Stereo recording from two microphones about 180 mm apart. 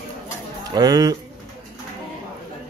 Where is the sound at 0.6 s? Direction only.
20° right (ahead or behind).